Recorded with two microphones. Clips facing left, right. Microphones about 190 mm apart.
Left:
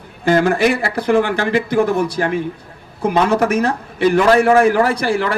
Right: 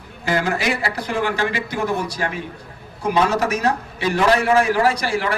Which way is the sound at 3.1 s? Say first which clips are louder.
Left 4 dB; 55° left (ahead or behind).